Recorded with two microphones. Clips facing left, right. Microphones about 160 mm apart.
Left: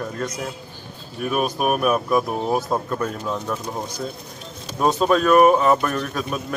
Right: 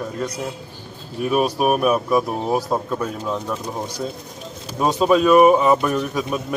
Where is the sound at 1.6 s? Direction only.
5° right (ahead or behind).